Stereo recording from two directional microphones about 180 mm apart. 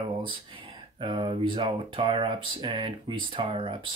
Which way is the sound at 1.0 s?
30° right (ahead or behind).